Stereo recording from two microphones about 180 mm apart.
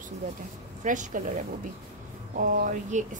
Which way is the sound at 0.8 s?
45° right (ahead or behind).